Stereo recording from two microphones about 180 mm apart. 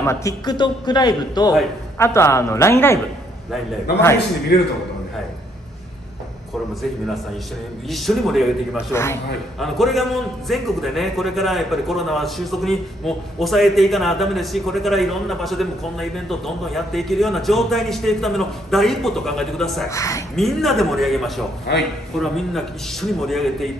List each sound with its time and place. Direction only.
0.0 s a man's voice: 15° left (ahead or behind)
4.5 s a man's voice: 60° left (ahead or behind)
7.9 s a man's voice: centre (ahead or behind)
8.9 s a man's voice: 15° left (ahead or behind)
9.6 s a man's voice: centre (ahead or behind)
19.9 s a man's voice: 15° left (ahead or behind)
20.3 s a man's voice: centre (ahead or behind)
21.7 s a man's voice: 65° left (ahead or behind)
22.2 s a man's voice: centre (ahead or behind)